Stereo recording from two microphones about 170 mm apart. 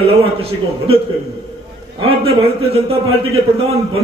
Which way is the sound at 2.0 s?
35° right (ahead or behind).